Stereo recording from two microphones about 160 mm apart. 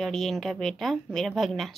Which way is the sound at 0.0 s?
Centre (ahead or behind).